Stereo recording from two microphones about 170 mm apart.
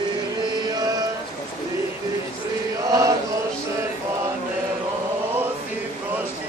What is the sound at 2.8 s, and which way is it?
Chant, 20° right (ahead or behind).